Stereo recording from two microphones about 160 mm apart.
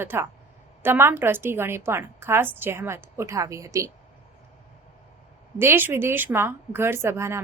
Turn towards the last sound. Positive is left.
turn(degrees=-15)  # may be behind; listen again after turning